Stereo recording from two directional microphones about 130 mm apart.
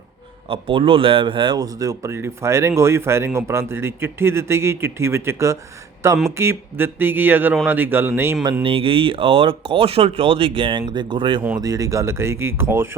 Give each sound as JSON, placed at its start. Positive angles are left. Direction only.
{"t": 0.4, "sound": "speech", "side_deg": -45}
{"t": 8.6, "sound": "speech", "side_deg": -45}